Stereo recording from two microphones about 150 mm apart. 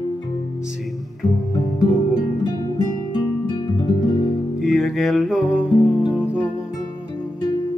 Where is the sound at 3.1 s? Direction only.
30° left (ahead or behind).